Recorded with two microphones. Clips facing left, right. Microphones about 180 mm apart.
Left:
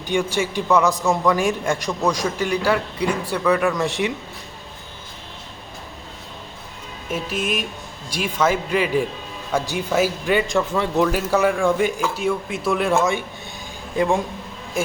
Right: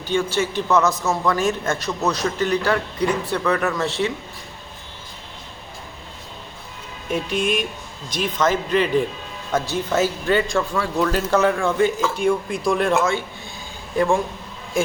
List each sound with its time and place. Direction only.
0.1 s a man's voice: 15° left (ahead or behind)
7.1 s music: 5° left (ahead or behind)
8.1 s a man's voice: 10° left (ahead or behind)